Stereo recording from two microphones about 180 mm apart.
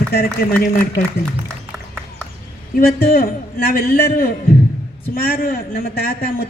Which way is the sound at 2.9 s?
55° left (ahead or behind).